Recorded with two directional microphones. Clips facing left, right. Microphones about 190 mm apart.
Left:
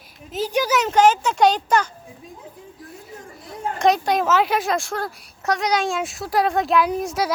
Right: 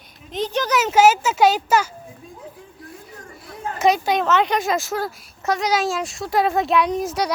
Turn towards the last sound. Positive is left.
turn(degrees=0)  # may be behind; listen again after turning